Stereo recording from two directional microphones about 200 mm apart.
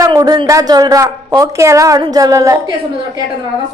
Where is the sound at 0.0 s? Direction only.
20° right (ahead or behind).